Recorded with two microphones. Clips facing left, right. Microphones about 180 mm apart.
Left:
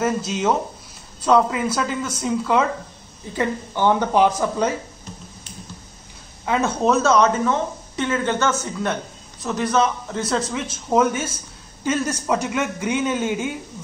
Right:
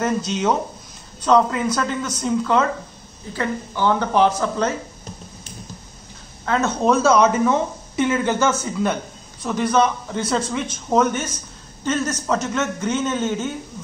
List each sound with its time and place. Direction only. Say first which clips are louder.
0.0 s a man's voice: even; 5° left (ahead or behind)
3.3 s a man's voice: left 1 dB; 15° left (ahead or behind)
6.4 s a man's voice: even; 10° left (ahead or behind)